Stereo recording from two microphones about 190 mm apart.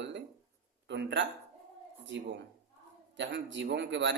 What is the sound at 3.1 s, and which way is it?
Speech, 75° right (ahead or behind).